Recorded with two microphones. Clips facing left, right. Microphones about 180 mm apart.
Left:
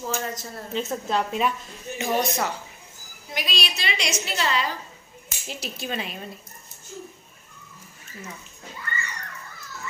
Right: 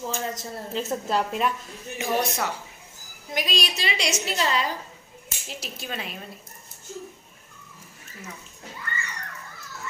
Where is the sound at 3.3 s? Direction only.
45° right (ahead or behind).